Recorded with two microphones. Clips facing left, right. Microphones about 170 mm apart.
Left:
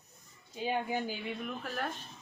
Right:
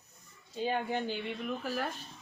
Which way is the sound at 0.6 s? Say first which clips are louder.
Right 1 dB; 10° left (ahead or behind).